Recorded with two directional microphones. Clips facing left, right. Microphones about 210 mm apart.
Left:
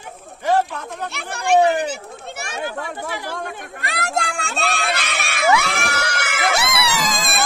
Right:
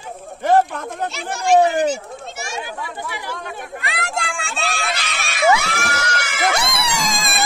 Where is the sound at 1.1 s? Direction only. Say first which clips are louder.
Right 2 dB; 60° left (ahead or behind).